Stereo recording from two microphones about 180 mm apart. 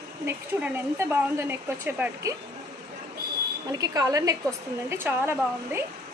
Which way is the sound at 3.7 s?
20° right (ahead or behind).